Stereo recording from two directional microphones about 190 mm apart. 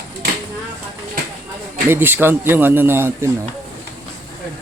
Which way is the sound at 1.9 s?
10° right (ahead or behind).